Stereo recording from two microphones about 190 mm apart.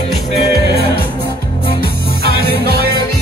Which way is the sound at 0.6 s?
60° right (ahead or behind).